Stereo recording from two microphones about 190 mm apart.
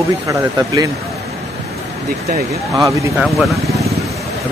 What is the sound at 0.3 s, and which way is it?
Speech, 20° right (ahead or behind).